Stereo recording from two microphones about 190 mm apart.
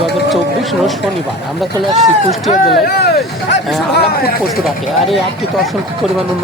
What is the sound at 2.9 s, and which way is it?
Speech, 60° left (ahead or behind).